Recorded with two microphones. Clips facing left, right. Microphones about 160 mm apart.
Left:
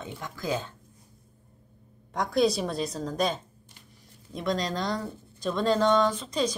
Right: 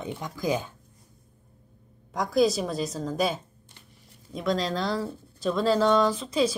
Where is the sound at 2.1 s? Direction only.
Centre (ahead or behind).